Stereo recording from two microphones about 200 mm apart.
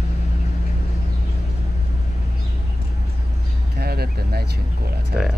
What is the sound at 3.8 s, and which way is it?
Speech, 50° right (ahead or behind).